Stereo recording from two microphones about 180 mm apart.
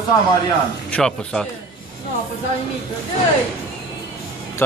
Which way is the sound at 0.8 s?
5° left (ahead or behind).